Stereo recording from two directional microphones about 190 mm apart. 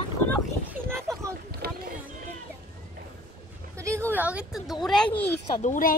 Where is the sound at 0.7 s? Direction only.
10° right (ahead or behind).